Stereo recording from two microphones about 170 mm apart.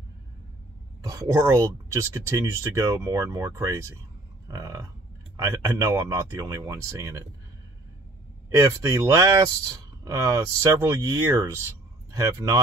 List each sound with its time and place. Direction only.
1.0 s speech: 20° right (ahead or behind)
4.5 s a sound: 20° right (ahead or behind)
5.4 s speech: 20° right (ahead or behind)
8.5 s speech: 15° right (ahead or behind)